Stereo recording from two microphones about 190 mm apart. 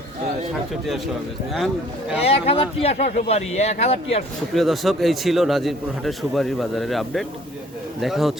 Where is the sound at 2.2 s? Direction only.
30° left (ahead or behind).